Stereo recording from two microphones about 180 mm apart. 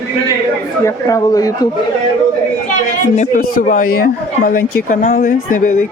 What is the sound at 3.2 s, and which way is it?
A woman's voice, 45° left (ahead or behind).